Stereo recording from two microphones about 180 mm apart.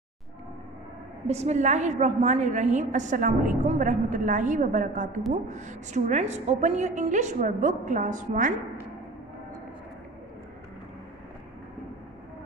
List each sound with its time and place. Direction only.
1.2 s a woman's voice: 35° right (ahead or behind)